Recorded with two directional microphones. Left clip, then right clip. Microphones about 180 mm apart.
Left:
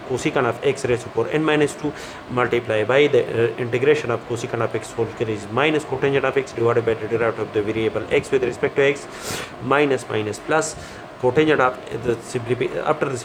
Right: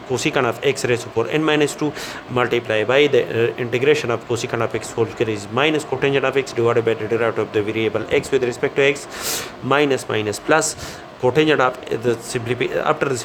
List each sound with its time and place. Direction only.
0.1 s speech: 40° right (ahead or behind)